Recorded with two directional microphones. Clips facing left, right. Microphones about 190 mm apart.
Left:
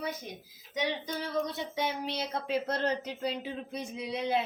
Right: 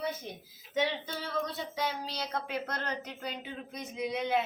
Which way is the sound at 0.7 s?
15° left (ahead or behind).